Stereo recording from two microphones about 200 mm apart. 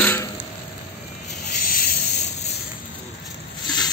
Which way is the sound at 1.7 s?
40° left (ahead or behind).